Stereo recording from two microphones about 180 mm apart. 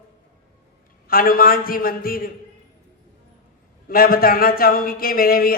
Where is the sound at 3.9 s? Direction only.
55° left (ahead or behind).